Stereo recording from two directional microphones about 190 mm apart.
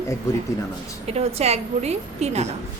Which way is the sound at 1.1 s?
35° right (ahead or behind).